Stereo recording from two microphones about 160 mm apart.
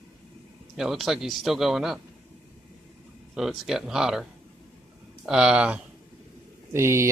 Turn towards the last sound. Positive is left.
turn(degrees=-15)  # may be behind; listen again after turning